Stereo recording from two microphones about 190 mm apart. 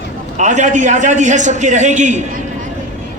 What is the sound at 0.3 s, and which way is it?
A man's voice, 40° right (ahead or behind).